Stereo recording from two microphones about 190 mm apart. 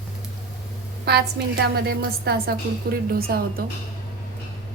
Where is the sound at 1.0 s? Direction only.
60° right (ahead or behind).